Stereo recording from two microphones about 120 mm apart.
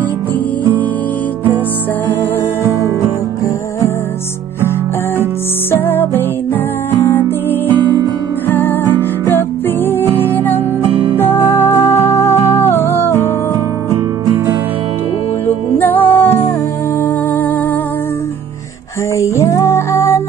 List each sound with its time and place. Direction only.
5.7 s music: 15° left (ahead or behind)
8.5 s music: 20° left (ahead or behind)
9.8 s music: 15° left (ahead or behind)
10.9 s music: 50° right (ahead or behind)
11.1 s music: 20° left (ahead or behind)
15.4 s music: 15° left (ahead or behind)
19.1 s music: 25° left (ahead or behind)